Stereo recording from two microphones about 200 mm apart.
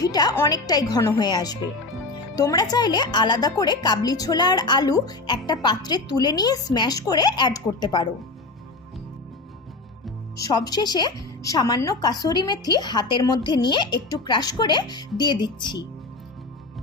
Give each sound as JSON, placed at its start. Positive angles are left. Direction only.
{"t": 0.0, "sound": "speech", "side_deg": 20}
{"t": 10.3, "sound": "speech", "side_deg": 20}